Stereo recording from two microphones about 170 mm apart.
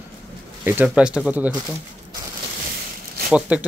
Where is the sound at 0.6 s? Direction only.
10° right (ahead or behind).